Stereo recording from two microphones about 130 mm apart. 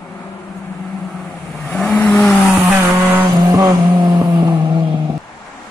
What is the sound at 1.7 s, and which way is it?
Vehicle, 5° left (ahead or behind).